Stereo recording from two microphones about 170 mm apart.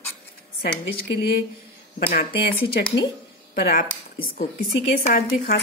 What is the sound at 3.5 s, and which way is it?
Speech, 60° left (ahead or behind).